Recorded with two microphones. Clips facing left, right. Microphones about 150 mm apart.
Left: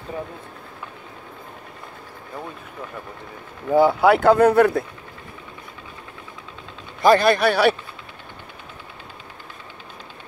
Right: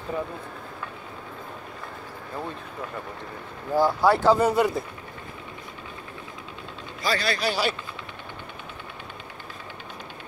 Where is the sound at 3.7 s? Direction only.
60° left (ahead or behind).